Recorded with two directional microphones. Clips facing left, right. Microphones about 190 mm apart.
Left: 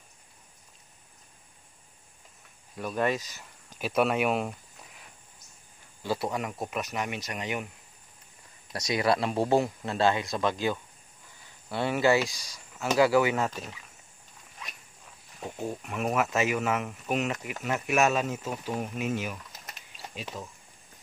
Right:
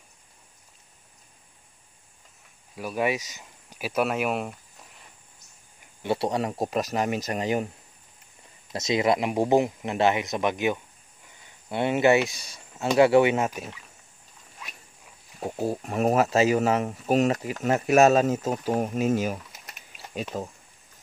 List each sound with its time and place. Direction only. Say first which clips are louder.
2.7 s speech: right 2 dB; 10° right (ahead or behind)
3.8 s speech: even; centre (ahead or behind)
6.0 s speech: right 5 dB; 30° right (ahead or behind)
8.7 s speech: right 3 dB; 25° right (ahead or behind)
15.4 s speech: right 6 dB; 35° right (ahead or behind)
20.3 s speech: right 9 dB; 45° right (ahead or behind)